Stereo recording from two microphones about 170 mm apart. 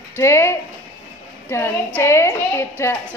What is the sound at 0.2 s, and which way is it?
A woman's voice, 15° left (ahead or behind).